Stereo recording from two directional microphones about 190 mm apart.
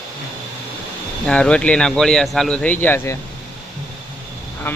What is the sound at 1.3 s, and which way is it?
Speech, 5° left (ahead or behind).